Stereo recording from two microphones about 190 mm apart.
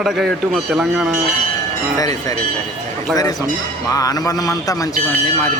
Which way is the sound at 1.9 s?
20° left (ahead or behind).